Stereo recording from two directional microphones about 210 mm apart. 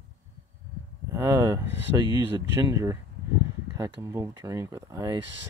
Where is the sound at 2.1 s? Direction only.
15° right (ahead or behind).